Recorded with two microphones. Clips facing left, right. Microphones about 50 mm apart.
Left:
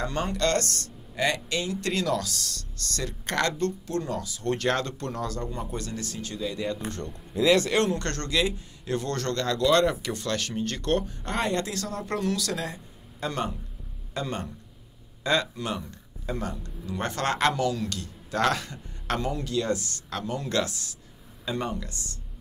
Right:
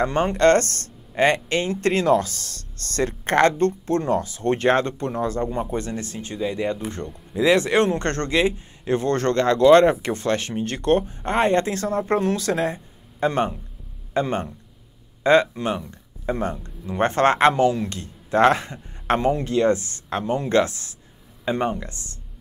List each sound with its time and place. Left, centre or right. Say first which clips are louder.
0.0 s a man's voice: right 9 dB; right